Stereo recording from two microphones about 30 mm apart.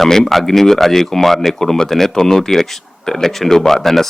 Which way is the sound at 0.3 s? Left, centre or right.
Centre.